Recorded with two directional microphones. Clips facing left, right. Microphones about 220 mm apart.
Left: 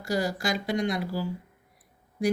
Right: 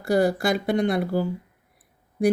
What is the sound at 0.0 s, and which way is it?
Speech, 60° right (ahead or behind).